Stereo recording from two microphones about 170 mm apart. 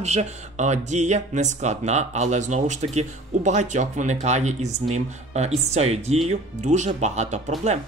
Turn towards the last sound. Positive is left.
turn(degrees=-40)  # may be behind; listen again after turning